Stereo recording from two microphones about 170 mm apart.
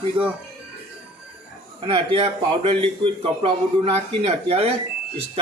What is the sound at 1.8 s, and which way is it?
A man's voice, 30° right (ahead or behind).